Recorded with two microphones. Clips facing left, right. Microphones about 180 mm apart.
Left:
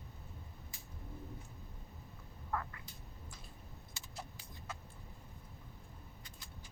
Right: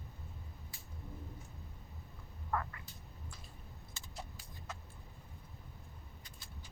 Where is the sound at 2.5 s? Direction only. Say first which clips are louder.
Right 2 dB; 55° right (ahead or behind).